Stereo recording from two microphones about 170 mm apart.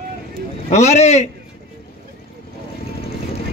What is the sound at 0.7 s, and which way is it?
Speech, 40° left (ahead or behind).